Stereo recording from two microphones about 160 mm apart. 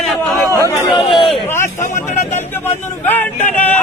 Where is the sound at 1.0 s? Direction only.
35° left (ahead or behind).